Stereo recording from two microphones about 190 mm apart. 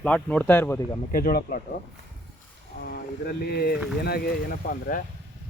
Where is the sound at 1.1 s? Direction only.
50° left (ahead or behind).